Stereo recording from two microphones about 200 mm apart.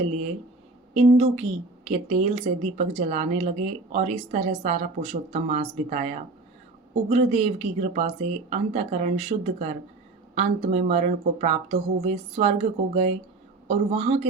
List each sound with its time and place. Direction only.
0.9 s a woman's voice: 30° right (ahead or behind)